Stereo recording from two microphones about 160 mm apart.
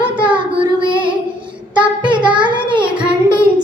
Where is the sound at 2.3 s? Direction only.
30° right (ahead or behind).